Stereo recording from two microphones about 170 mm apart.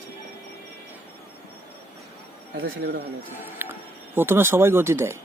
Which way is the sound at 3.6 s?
15° right (ahead or behind).